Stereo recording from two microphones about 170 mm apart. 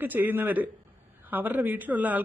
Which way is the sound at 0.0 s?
10° right (ahead or behind).